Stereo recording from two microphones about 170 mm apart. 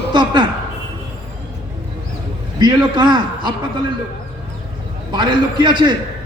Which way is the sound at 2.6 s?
25° right (ahead or behind).